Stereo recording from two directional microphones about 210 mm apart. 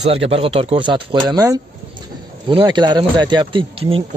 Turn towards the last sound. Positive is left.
turn(degrees=-25)  # may be behind; listen again after turning